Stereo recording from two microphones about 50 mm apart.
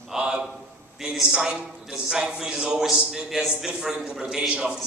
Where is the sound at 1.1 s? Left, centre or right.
Centre.